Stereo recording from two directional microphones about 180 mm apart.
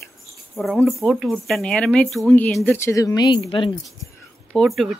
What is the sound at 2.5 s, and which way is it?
Speech, 15° left (ahead or behind).